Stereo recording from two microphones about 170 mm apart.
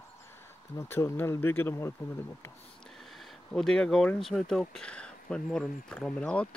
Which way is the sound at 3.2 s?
Centre (ahead or behind).